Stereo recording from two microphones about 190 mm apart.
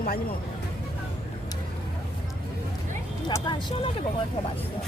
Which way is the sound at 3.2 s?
25° left (ahead or behind).